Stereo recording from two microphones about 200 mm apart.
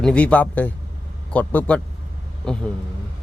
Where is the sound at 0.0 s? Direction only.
5° left (ahead or behind).